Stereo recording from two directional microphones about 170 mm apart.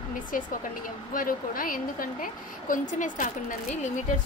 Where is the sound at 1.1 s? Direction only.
55° left (ahead or behind).